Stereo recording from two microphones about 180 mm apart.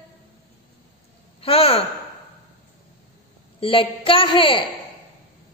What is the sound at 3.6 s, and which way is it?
A woman's voice, 30° left (ahead or behind).